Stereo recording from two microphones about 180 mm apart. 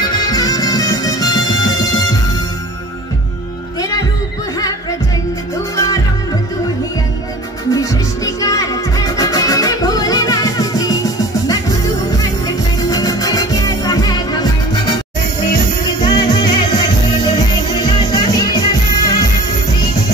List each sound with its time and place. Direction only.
0.1 s music: 20° left (ahead or behind)
7.7 s music: 20° left (ahead or behind)
12.9 s music: 20° left (ahead or behind)
15.8 s music: 25° left (ahead or behind)